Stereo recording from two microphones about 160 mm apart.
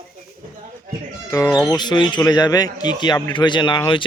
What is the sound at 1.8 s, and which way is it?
A man's voice, 25° left (ahead or behind).